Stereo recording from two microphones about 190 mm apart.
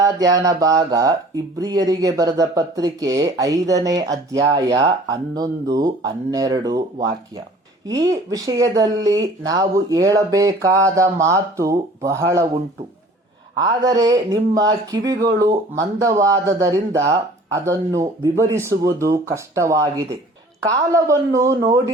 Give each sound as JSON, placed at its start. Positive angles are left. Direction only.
{"t": 0.0, "sound": "speech", "side_deg": -20}
{"t": 7.9, "sound": "speech", "side_deg": -15}
{"t": 13.6, "sound": "speech", "side_deg": -20}